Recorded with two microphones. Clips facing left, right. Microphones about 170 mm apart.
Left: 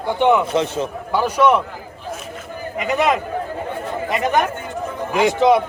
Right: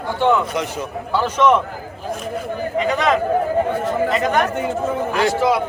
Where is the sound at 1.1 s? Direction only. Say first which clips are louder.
Even; 10° left (ahead or behind).